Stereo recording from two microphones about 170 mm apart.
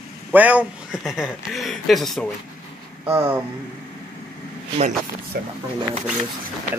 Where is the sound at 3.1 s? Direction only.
15° right (ahead or behind).